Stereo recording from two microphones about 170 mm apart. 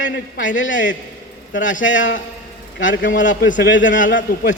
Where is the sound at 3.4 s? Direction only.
90° left.